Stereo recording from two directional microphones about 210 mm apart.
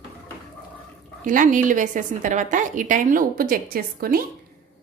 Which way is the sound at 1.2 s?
40° right (ahead or behind).